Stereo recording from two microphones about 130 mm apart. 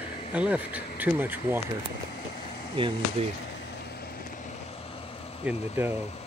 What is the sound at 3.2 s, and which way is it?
Speech, 50° right (ahead or behind).